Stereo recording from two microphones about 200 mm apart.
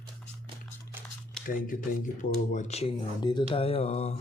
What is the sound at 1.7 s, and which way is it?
Speech, 40° left (ahead or behind).